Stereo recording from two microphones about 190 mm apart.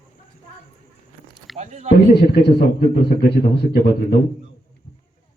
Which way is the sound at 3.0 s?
55° left (ahead or behind).